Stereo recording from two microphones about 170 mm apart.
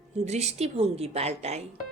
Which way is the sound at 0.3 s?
40° right (ahead or behind).